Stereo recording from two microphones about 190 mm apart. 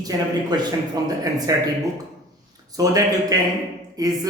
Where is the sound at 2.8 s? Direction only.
20° right (ahead or behind).